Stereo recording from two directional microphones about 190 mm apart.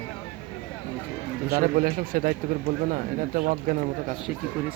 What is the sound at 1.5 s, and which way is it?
Speech, 50° right (ahead or behind).